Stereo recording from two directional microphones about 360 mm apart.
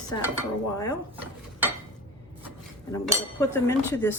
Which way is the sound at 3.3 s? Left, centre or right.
Centre.